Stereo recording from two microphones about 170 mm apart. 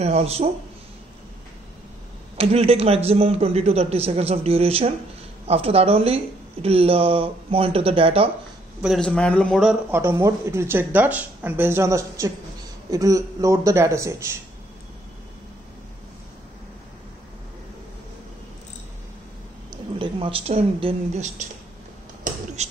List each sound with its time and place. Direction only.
0.0 s speech: 40° right (ahead or behind)
2.3 s speech: 35° right (ahead or behind)
8.8 s a man's voice: 5° left (ahead or behind)
9.8 s a man's voice: 15° right (ahead or behind)
19.7 s speech: 30° right (ahead or behind)
22.6 s speech: 40° right (ahead or behind)